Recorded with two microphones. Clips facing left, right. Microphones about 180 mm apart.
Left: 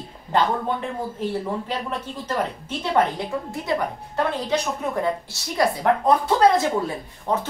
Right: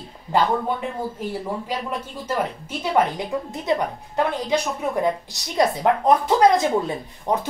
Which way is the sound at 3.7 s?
20° right (ahead or behind).